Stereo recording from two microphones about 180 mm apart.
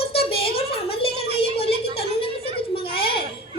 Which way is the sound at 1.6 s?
30° left (ahead or behind).